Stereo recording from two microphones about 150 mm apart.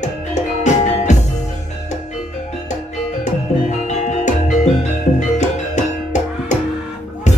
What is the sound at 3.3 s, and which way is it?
Music, 50° left (ahead or behind).